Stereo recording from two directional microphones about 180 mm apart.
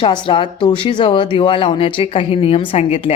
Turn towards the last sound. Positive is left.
turn(degrees=30)  # may be behind; listen again after turning